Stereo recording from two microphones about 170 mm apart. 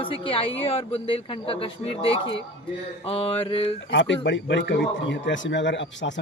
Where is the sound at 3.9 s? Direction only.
90° left.